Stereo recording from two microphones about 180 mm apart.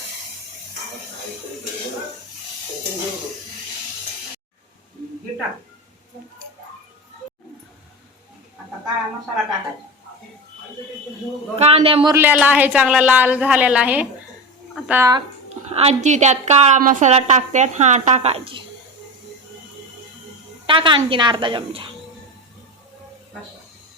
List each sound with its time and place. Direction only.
11.5 s a woman's voice: 35° right (ahead or behind)
12.1 s speech: 10° right (ahead or behind)
15.7 s a woman's voice: 35° right (ahead or behind)
20.7 s a woman's voice: 30° right (ahead or behind)